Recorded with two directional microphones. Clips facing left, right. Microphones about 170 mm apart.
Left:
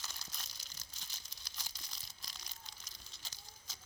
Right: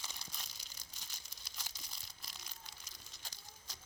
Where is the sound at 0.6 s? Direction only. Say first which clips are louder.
Even; 5° left (ahead or behind).